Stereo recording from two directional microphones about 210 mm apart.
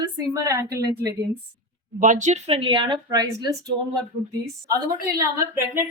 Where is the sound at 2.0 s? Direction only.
35° right (ahead or behind); by 3.5 s 20° right (ahead or behind).